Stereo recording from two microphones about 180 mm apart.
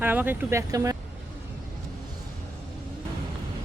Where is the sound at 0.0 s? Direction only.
10° right (ahead or behind).